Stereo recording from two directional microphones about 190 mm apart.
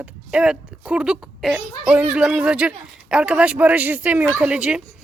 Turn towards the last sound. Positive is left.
turn(degrees=-5)  # may be behind; listen again after turning